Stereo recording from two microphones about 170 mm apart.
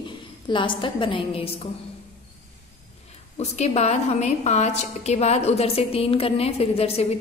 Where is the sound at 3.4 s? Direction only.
40° left (ahead or behind).